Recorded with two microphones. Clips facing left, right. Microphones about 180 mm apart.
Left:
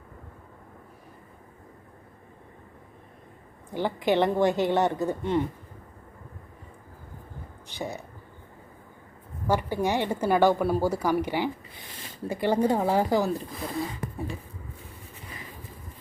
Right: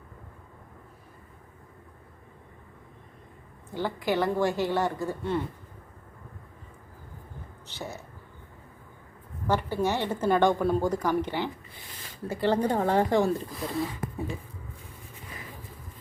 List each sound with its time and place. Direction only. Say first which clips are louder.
3.7 s a woman's voice: left 3 dB; 20° left (ahead or behind)
7.7 s speech: left 4 dB; 15° left (ahead or behind)
9.5 s a woman's voice: left 1 dB; 15° left (ahead or behind)